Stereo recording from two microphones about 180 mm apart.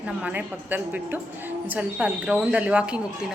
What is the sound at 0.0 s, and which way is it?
A woman's voice, 5° right (ahead or behind).